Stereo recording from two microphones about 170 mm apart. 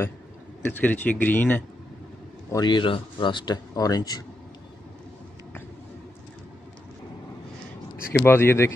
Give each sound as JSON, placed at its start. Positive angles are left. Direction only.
{"t": 0.7, "sound": "speech", "side_deg": 10}
{"t": 2.5, "sound": "speech", "side_deg": 25}
{"t": 8.1, "sound": "speech", "side_deg": 15}